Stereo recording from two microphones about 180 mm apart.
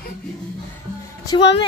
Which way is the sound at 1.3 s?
30° left (ahead or behind).